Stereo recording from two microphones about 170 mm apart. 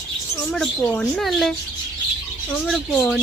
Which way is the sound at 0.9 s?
Centre (ahead or behind).